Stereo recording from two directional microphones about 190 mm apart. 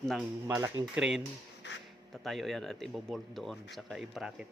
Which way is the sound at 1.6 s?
65° left (ahead or behind).